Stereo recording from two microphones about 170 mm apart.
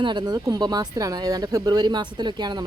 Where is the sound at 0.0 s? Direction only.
25° right (ahead or behind).